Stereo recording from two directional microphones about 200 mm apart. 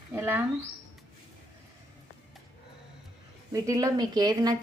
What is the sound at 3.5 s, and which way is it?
Speech, 15° right (ahead or behind).